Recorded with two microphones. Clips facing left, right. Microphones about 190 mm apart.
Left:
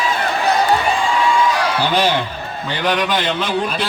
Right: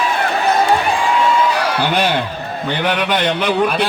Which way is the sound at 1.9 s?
55° right (ahead or behind).